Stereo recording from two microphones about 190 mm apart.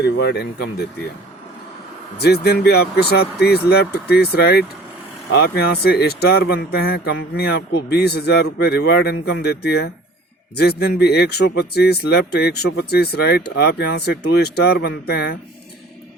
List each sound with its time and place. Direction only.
0.0 s speech: 60° left (ahead or behind)
2.1 s speech: 55° left (ahead or behind)